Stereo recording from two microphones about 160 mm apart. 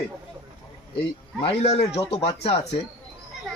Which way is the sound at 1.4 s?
35° left (ahead or behind).